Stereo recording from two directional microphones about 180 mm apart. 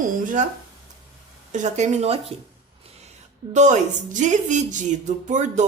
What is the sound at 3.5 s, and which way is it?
Speech, 40° right (ahead or behind).